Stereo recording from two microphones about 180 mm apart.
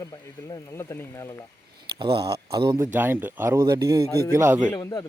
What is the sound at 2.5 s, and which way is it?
Speech, 25° right (ahead or behind).